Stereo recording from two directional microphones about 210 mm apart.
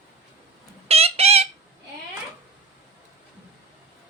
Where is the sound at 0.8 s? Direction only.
30° right (ahead or behind).